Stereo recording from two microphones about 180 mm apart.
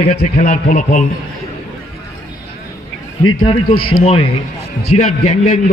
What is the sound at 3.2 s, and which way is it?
A man's voice, 25° left (ahead or behind).